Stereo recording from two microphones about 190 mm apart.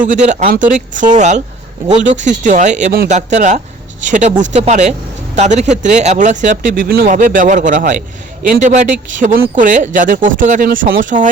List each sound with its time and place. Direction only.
0.0 s speech: 40° right (ahead or behind)